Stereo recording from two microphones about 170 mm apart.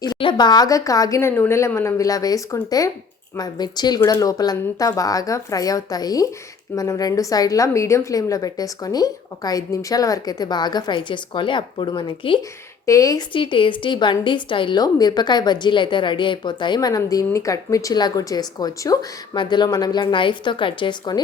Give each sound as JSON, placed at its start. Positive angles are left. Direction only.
{"t": 0.0, "sound": "a woman's voice", "side_deg": 25}
{"t": 12.8, "sound": "a woman's voice", "side_deg": 20}